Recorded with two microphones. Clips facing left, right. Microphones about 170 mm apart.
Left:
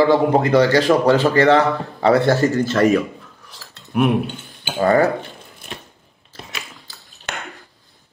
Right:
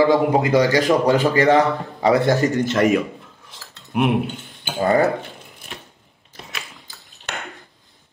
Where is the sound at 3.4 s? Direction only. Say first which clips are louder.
Left 1 dB; 25° right (ahead or behind).